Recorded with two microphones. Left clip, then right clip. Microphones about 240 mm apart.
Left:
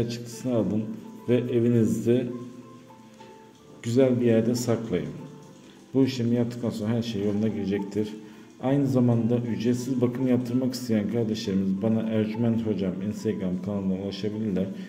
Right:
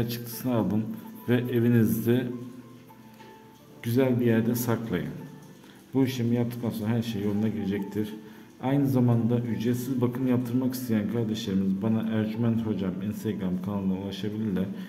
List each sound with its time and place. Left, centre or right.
0.0 s speech: centre
3.8 s a man's voice: centre